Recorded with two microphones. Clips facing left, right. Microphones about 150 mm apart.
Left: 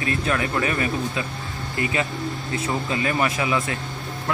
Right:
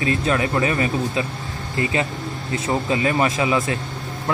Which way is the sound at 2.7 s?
25° right (ahead or behind).